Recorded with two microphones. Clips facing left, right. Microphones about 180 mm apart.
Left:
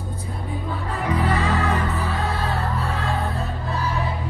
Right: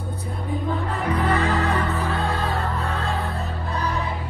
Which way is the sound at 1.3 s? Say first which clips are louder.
Right 1 dB; 35° right (ahead or behind).